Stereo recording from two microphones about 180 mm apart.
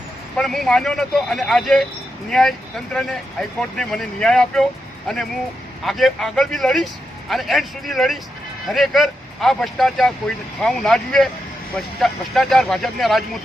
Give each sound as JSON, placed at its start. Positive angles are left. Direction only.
{"t": 0.3, "sound": "speech", "side_deg": 0}